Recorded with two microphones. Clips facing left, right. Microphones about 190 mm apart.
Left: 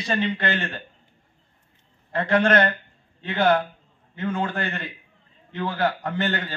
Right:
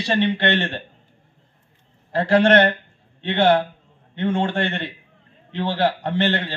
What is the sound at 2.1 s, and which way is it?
A man's voice, 30° right (ahead or behind).